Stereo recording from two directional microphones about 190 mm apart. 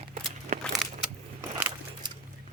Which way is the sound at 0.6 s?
Centre (ahead or behind).